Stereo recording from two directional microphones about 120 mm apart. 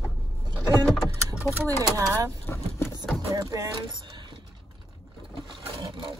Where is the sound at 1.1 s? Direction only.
25° right (ahead or behind).